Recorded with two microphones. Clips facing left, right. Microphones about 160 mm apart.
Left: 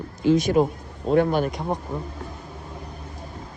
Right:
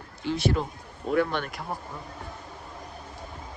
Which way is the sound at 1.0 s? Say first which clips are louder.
Left 6 dB; 40° left (ahead or behind).